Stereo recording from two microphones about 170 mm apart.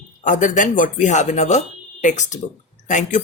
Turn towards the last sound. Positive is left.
turn(degrees=45)  # may be behind; listen again after turning